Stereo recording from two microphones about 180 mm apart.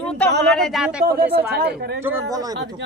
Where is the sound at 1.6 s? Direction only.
65° right (ahead or behind).